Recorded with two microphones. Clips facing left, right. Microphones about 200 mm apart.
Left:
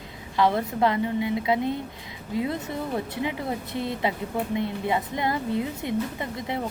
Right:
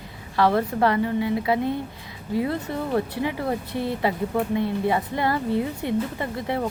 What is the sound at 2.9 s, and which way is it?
Speech, 20° left (ahead or behind).